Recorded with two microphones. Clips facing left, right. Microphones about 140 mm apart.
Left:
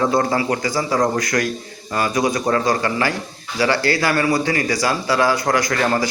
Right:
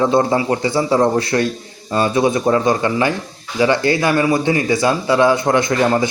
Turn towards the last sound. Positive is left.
turn(degrees=-20)  # may be behind; listen again after turning